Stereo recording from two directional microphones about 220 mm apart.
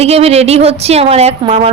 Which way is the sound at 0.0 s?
30° right (ahead or behind).